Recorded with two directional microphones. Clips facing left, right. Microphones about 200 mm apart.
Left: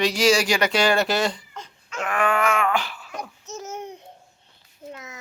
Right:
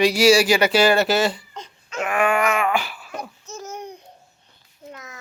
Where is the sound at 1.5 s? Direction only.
20° right (ahead or behind).